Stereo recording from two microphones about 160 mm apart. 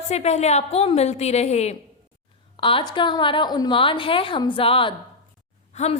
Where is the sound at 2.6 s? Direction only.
30° left (ahead or behind).